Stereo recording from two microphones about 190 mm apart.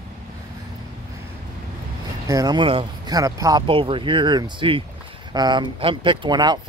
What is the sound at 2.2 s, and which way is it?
Speech, 20° right (ahead or behind).